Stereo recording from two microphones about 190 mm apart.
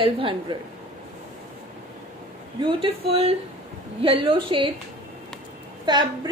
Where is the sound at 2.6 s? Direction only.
25° right (ahead or behind).